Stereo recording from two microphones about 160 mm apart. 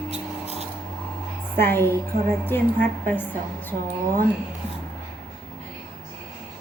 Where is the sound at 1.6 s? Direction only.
15° left (ahead or behind).